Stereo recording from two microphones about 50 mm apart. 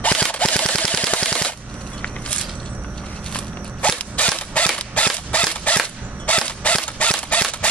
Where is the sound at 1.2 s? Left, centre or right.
Centre.